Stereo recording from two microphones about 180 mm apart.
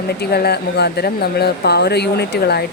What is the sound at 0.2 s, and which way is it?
Speech, 60° left (ahead or behind).